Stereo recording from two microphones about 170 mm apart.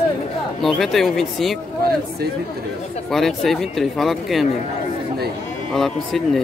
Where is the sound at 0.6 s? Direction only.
Centre (ahead or behind).